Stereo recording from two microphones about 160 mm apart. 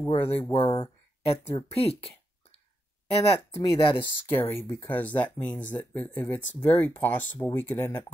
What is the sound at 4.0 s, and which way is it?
Speech, 15° left (ahead or behind).